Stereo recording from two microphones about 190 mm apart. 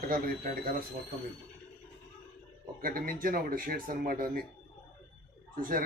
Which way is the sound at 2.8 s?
50° right (ahead or behind).